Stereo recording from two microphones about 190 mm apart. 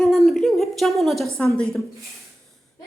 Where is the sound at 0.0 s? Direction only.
Centre (ahead or behind).